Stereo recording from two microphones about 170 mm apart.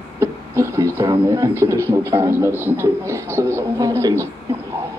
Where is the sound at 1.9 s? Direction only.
15° right (ahead or behind).